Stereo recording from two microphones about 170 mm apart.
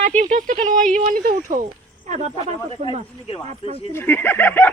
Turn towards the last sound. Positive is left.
turn(degrees=10)  # may be behind; listen again after turning